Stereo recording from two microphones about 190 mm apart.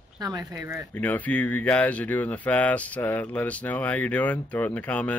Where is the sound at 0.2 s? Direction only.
20° right (ahead or behind).